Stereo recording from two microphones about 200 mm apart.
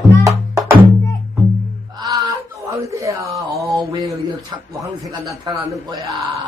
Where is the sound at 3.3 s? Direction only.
15° right (ahead or behind).